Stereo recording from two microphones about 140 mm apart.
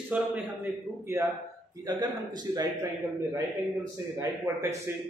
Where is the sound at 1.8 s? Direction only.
25° right (ahead or behind).